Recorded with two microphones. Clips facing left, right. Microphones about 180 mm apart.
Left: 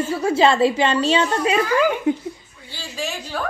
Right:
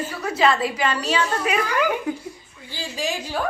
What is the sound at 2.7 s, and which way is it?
Speech, 15° right (ahead or behind).